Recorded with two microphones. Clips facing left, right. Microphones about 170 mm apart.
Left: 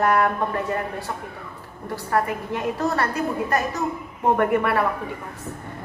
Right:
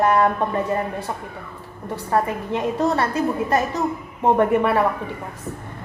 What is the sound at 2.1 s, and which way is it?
A woman's voice, 25° right (ahead or behind).